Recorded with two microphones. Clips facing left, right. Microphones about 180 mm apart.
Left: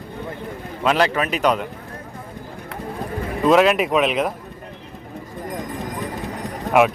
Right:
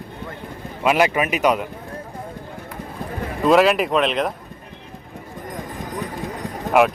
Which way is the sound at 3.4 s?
Centre (ahead or behind).